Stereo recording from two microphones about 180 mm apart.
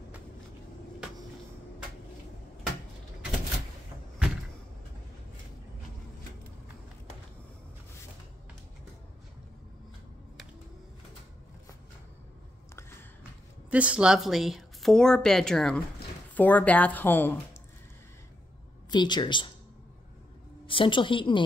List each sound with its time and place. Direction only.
13.7 s speech: 5° right (ahead or behind); by 17.4 s 10° left (ahead or behind)
18.9 s speech: 25° left (ahead or behind)
20.6 s a woman's voice: 30° left (ahead or behind)